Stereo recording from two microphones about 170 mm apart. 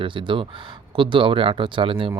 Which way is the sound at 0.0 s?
30° right (ahead or behind).